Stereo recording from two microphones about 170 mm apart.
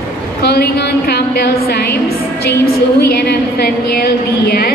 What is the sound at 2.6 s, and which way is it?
A woman's voice, 70° left (ahead or behind).